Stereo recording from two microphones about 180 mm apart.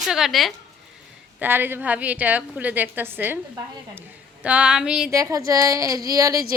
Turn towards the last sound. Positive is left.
turn(degrees=-20)  # may be behind; listen again after turning